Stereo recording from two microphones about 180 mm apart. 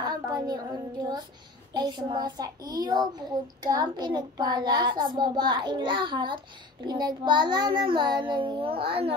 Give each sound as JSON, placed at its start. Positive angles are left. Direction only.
{"t": 0.0, "sound": "speech", "side_deg": -20}
{"t": 1.7, "sound": "a child's voice", "side_deg": -25}